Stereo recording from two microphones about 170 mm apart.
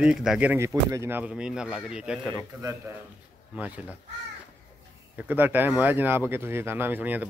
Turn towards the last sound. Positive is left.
turn(degrees=-10)  # may be behind; listen again after turning